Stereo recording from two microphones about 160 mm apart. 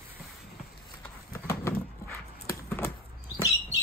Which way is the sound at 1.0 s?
15° left (ahead or behind).